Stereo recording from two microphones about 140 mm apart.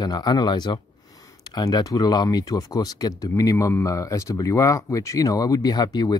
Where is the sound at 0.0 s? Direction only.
30° left (ahead or behind).